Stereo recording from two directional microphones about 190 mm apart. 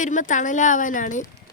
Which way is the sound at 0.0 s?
40° left (ahead or behind).